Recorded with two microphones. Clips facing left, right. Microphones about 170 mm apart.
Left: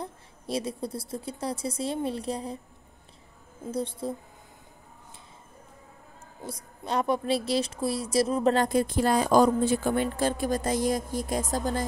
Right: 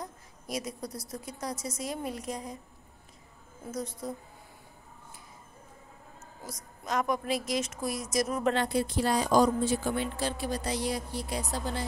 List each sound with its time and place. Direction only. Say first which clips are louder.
0.0 s a woman's voice: left 4 dB; 30° left (ahead or behind)
3.6 s a woman's voice: left 5 dB; 30° left (ahead or behind)
6.4 s a woman's voice: left 4 dB; 30° left (ahead or behind)
8.5 s a woman's voice: left 4 dB; 50° left (ahead or behind)